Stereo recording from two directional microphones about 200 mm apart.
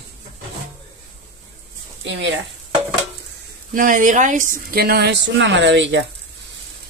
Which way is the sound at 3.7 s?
40° right (ahead or behind).